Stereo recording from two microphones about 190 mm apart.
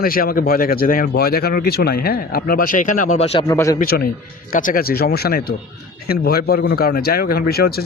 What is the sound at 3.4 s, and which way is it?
Speech, 15° left (ahead or behind).